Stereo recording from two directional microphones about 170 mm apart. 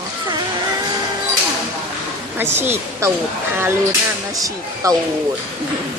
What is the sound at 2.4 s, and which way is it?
Speech, 15° right (ahead or behind).